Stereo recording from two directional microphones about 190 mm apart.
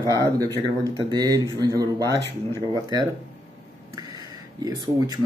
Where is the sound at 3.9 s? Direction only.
20° right (ahead or behind).